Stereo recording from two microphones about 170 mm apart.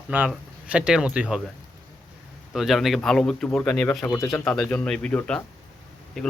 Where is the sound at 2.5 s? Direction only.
Centre (ahead or behind); by 4.3 s 15° left (ahead or behind).